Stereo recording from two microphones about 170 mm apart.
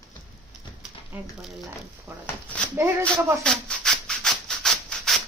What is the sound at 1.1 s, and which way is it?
Speech, 10° right (ahead or behind).